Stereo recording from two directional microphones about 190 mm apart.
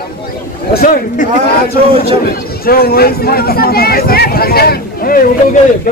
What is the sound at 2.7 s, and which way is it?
Speech, 50° left (ahead or behind).